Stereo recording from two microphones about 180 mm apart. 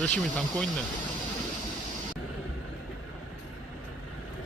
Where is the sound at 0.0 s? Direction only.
5° left (ahead or behind).